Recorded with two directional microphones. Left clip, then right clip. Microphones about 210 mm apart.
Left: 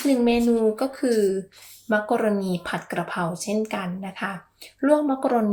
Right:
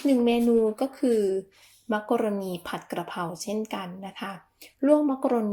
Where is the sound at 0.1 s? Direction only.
45° right (ahead or behind).